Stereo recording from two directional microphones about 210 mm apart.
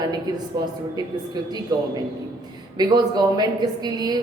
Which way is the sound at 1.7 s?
20° right (ahead or behind).